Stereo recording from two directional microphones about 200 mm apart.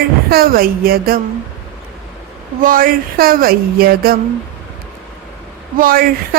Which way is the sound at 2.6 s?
45° right (ahead or behind).